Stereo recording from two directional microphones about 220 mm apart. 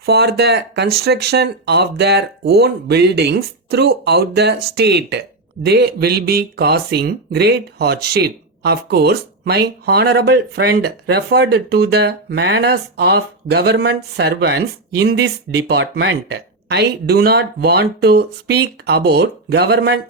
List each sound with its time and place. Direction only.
0.0 s speech: 45° right (ahead or behind)